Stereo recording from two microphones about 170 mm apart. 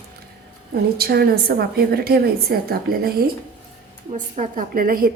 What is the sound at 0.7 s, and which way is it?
A woman's voice, 65° right (ahead or behind).